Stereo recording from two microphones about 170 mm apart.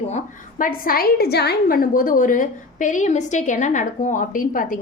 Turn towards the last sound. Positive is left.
turn(degrees=50)  # may be behind; listen again after turning